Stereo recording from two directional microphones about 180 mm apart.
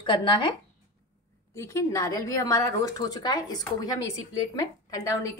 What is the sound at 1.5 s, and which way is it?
A woman's voice, 15° left (ahead or behind).